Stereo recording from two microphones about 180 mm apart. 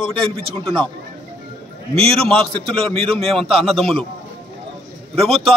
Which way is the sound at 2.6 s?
30° right (ahead or behind).